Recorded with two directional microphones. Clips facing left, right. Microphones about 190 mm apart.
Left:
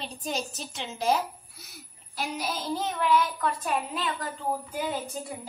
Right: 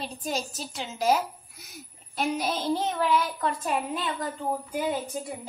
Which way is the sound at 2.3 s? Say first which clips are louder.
Right 2 dB; 25° right (ahead or behind).